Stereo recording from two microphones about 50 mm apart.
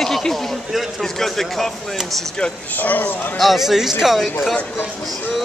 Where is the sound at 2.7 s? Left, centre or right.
Left.